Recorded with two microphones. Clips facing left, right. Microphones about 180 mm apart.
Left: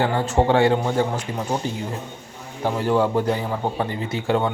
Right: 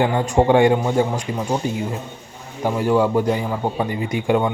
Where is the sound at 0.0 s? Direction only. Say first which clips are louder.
Right 3 dB; 15° right (ahead or behind).